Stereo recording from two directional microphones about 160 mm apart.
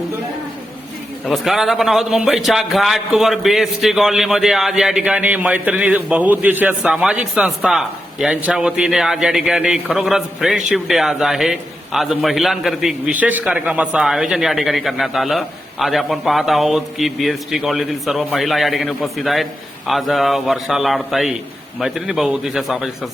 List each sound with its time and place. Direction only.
1.3 s a man's voice: centre (ahead or behind)